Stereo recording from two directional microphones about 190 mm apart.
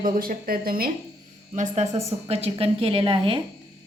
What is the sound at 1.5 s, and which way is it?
A woman's voice, 40° right (ahead or behind).